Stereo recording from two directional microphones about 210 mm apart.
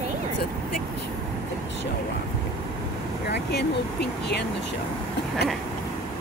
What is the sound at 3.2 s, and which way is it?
Speech, 50° left (ahead or behind).